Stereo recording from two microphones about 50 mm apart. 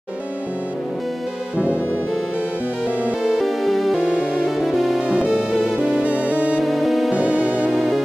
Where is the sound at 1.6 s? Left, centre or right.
Right.